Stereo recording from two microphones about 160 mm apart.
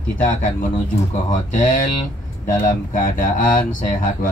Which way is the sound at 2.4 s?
55° left (ahead or behind).